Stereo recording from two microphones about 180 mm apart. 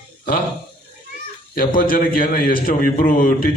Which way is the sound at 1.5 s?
50° left (ahead or behind).